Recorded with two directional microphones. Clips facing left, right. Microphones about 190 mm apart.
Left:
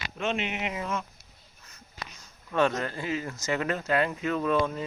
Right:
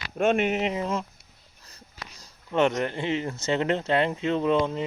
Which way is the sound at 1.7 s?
35° right (ahead or behind).